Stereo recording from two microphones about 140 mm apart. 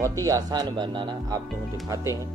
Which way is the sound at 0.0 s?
25° right (ahead or behind).